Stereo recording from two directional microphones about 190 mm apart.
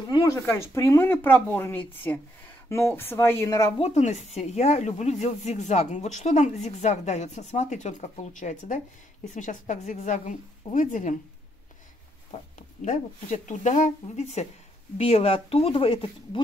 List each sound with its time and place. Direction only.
0.1 s speech: 15° left (ahead or behind)
3.8 s a woman's voice: 35° left (ahead or behind)
12.5 s a woman's voice: 40° left (ahead or behind)